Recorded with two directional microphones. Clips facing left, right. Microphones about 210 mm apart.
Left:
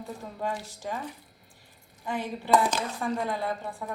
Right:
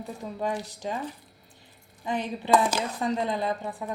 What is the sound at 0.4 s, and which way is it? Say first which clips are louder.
Speech: right 2 dB; 15° right (ahead or behind).